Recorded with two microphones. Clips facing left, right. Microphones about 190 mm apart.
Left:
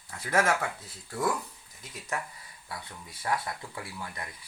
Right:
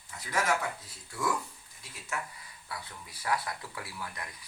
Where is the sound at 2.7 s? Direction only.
25° left (ahead or behind).